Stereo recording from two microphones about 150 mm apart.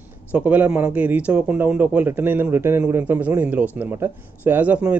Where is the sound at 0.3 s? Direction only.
10° right (ahead or behind).